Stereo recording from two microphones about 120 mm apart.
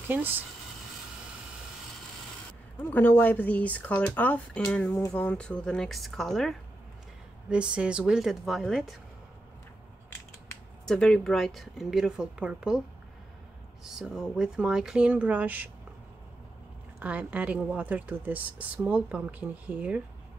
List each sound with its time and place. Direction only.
0.1 s speech: 15° right (ahead or behind)
2.8 s a woman's voice: 15° left (ahead or behind)
7.4 s speech: 10° right (ahead or behind)
10.9 s a woman's voice: 5° left (ahead or behind)
13.8 s a woman's voice: 5° right (ahead or behind)
17.0 s speech: 10° right (ahead or behind)